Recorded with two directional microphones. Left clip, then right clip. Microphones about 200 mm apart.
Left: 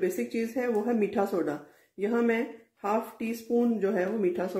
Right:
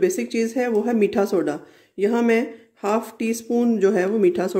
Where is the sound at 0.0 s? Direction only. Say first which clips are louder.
Right 9 dB; 45° right (ahead or behind).